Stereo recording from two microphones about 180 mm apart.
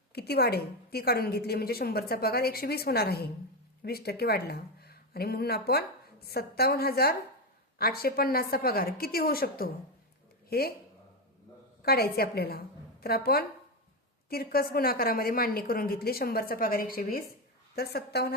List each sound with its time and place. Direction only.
0.1 s a woman's voice: 60° left (ahead or behind)
11.8 s a woman's voice: 60° left (ahead or behind)